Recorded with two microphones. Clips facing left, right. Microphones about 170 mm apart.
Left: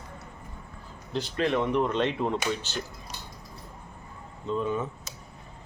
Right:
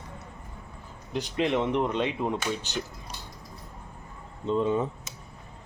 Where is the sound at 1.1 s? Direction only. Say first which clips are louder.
Even; 15° right (ahead or behind).